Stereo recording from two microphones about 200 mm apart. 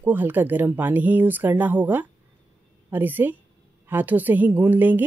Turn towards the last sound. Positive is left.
turn(degrees=-10)  # may be behind; listen again after turning